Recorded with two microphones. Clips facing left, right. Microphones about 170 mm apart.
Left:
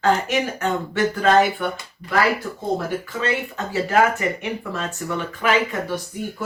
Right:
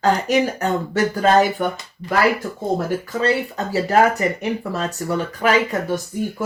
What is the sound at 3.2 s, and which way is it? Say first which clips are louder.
Speech: right 5 dB; 35° right (ahead or behind).